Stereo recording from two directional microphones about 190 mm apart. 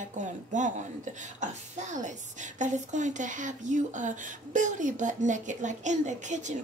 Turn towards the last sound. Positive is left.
turn(degrees=-40)  # may be behind; listen again after turning